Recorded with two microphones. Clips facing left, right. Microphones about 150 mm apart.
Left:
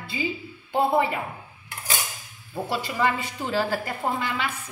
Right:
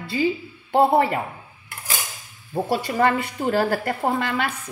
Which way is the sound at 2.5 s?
50° right (ahead or behind).